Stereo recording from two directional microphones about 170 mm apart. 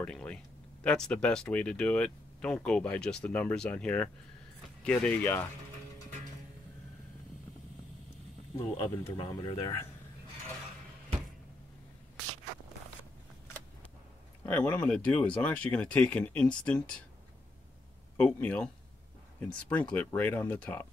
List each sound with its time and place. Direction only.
0.0 s a sound: 5° left (ahead or behind)
0.8 s speech: 5° left (ahead or behind)
8.5 s speech: 20° left (ahead or behind)
14.4 s speech: 10° left (ahead or behind)
18.1 s speech: 10° left (ahead or behind)